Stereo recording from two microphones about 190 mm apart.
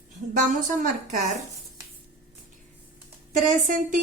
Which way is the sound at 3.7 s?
45° right (ahead or behind).